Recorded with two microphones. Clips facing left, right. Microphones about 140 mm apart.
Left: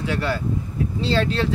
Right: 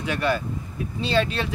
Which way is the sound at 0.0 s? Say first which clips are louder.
Even; 15° right (ahead or behind).